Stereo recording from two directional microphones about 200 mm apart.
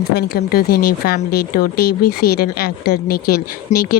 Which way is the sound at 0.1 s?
50° left (ahead or behind).